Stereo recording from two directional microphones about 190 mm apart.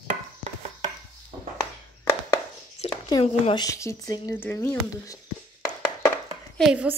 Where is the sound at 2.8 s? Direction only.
35° left (ahead or behind).